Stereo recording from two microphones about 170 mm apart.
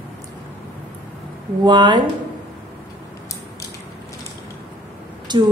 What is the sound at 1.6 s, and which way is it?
Speech, 25° right (ahead or behind).